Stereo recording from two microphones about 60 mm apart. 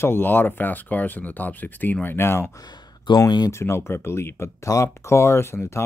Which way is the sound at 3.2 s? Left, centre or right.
Left.